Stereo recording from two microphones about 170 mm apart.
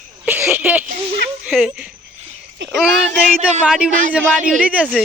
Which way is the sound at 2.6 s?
90° right.